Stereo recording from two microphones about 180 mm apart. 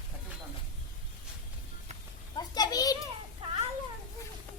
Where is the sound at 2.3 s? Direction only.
20° left (ahead or behind).